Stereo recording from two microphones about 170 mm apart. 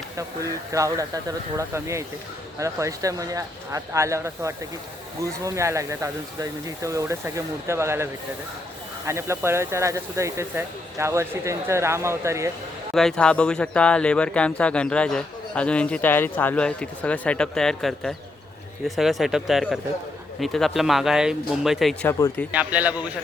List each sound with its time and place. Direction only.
0.7 s speech: 20° right (ahead or behind)
12.9 s speech: 5° left (ahead or behind)
22.0 s speech: 10° left (ahead or behind)
22.5 s speech: 10° right (ahead or behind)